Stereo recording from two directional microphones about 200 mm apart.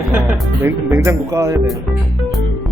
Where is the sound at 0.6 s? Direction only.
10° right (ahead or behind).